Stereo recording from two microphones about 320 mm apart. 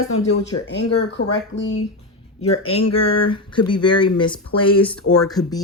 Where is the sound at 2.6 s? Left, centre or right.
Left.